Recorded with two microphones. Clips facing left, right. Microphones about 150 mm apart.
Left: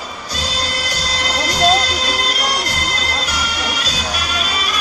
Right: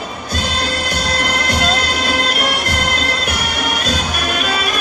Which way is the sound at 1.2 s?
55° right (ahead or behind).